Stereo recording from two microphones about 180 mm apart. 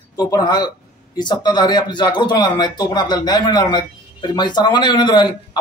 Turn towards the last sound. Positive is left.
turn(degrees=25)  # may be behind; listen again after turning